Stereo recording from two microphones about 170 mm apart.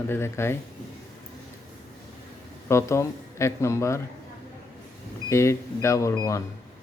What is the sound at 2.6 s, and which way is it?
Speech, 15° left (ahead or behind).